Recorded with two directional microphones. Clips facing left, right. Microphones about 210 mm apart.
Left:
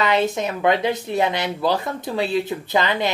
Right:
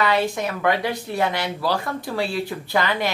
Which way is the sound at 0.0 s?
20° left (ahead or behind).